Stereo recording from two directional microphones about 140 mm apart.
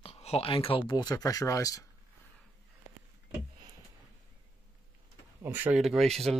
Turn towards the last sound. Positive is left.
turn(degrees=0)  # may be behind; listen again after turning